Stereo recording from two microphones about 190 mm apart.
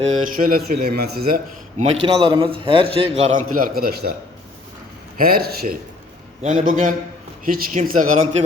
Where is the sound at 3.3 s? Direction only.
45° right (ahead or behind).